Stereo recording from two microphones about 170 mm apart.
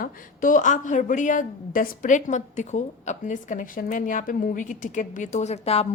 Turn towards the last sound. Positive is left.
turn(degrees=40)  # may be behind; listen again after turning